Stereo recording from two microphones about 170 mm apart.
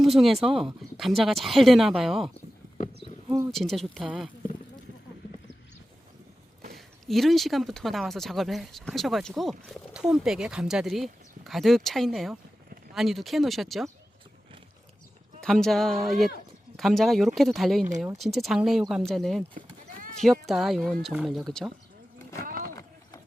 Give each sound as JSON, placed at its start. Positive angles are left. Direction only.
{"t": 0.0, "sound": "speech", "side_deg": 0}
{"t": 3.0, "sound": "a sound", "side_deg": -20}
{"t": 3.5, "sound": "speech", "side_deg": 0}
{"t": 6.7, "sound": "speech", "side_deg": 0}
{"t": 15.4, "sound": "speech", "side_deg": 0}
{"t": 22.7, "sound": "run", "side_deg": 15}